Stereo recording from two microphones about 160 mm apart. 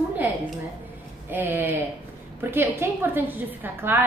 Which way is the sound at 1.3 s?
10° right (ahead or behind).